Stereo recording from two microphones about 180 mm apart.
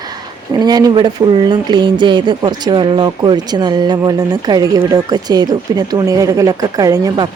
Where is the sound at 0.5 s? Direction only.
20° right (ahead or behind).